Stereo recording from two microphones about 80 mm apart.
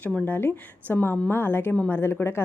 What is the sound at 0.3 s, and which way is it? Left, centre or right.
A woman's voice, left.